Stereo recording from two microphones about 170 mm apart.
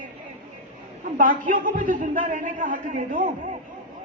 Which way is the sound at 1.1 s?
50° right (ahead or behind).